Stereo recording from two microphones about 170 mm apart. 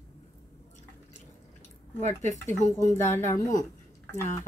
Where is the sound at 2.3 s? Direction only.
15° left (ahead or behind).